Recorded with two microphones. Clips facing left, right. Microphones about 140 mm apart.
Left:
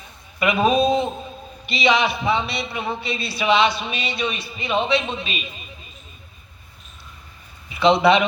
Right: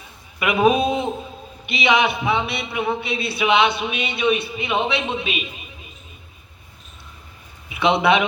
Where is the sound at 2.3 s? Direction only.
60° right (ahead or behind).